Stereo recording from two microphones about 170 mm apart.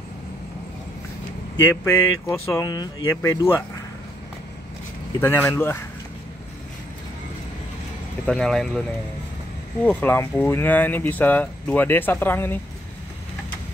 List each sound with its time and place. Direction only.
1.9 s speech: 20° left (ahead or behind)
5.2 s speech: 10° left (ahead or behind)
8.3 s speech: 5° left (ahead or behind)
9.8 s speech: 10° left (ahead or behind)